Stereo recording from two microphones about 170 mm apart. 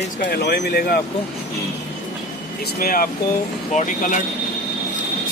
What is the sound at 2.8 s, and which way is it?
Speech, 55° left (ahead or behind).